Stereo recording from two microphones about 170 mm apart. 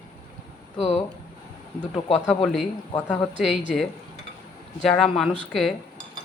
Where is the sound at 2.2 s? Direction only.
Centre (ahead or behind).